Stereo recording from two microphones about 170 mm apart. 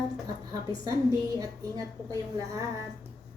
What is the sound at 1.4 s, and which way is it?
Speech, 20° right (ahead or behind).